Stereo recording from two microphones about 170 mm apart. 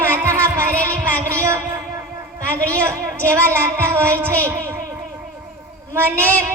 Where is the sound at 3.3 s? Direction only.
15° right (ahead or behind).